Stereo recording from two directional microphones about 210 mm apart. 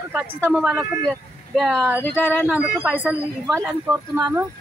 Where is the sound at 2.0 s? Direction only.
10° left (ahead or behind).